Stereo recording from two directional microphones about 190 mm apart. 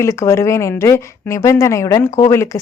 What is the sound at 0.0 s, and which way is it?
Speech, 15° left (ahead or behind).